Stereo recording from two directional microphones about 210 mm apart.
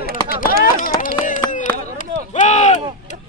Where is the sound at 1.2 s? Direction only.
40° left (ahead or behind).